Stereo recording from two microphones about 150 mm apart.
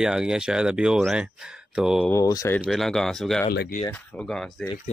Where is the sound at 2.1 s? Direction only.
20° left (ahead or behind).